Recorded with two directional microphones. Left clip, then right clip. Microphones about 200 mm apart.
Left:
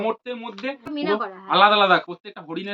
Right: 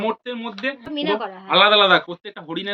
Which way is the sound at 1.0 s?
35° left (ahead or behind).